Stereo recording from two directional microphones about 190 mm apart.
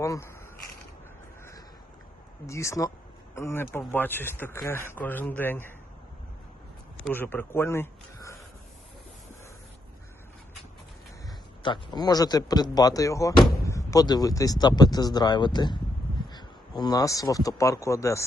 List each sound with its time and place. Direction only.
0.0 s speech: 15° left (ahead or behind)
2.5 s speech: 15° left (ahead or behind)
7.1 s a man's voice: 10° left (ahead or behind)
11.3 s speech: 25° left (ahead or behind)